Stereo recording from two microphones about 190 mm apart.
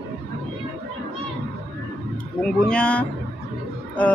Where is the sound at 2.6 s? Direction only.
5° left (ahead or behind).